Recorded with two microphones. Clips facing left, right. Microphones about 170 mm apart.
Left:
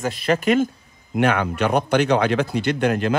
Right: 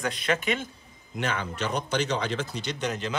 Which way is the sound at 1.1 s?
60° left (ahead or behind).